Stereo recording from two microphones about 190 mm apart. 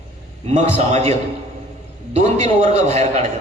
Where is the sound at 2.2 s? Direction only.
35° right (ahead or behind).